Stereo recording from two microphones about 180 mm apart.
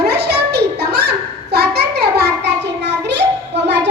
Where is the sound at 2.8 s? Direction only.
75° right (ahead or behind).